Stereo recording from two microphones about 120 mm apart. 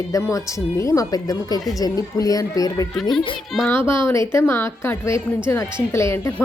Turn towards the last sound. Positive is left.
turn(degrees=25)  # may be behind; listen again after turning